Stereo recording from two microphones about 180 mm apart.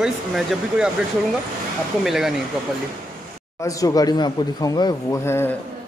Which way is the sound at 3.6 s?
20° left (ahead or behind).